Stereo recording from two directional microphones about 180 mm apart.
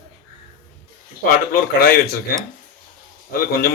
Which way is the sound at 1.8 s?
55° left (ahead or behind).